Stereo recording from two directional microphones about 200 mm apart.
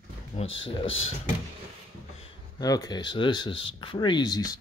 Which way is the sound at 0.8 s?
80° left.